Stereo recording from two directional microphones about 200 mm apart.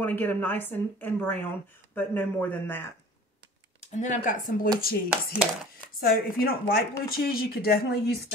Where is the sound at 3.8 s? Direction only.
35° left (ahead or behind).